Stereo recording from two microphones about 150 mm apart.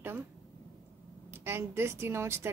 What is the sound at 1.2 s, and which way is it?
Speech, 15° right (ahead or behind).